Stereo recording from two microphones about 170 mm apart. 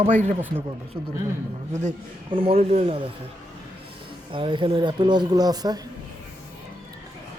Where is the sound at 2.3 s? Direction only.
35° right (ahead or behind).